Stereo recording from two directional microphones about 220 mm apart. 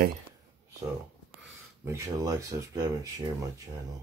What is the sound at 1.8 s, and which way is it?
Speech, 15° right (ahead or behind).